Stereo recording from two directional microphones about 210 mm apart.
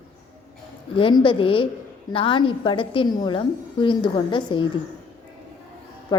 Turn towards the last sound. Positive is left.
turn(degrees=20)  # may be behind; listen again after turning